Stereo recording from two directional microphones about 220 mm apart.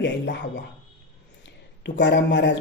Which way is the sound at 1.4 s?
55° left (ahead or behind).